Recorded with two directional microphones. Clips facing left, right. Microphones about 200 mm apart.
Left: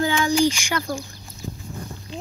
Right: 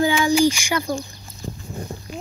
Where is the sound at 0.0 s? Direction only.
10° right (ahead or behind).